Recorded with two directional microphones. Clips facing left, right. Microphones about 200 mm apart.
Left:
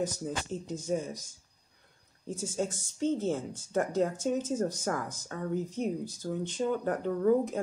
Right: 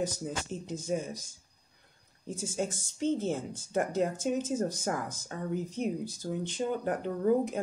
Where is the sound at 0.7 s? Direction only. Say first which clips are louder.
Even; 10° right (ahead or behind).